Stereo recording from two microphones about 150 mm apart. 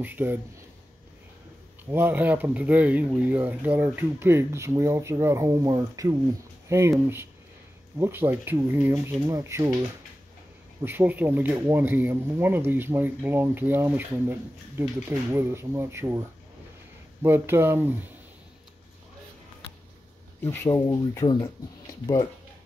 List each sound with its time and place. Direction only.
0.0 s speech: 15° right (ahead or behind)
1.9 s speech: 15° right (ahead or behind)
20.4 s speech: 20° left (ahead or behind)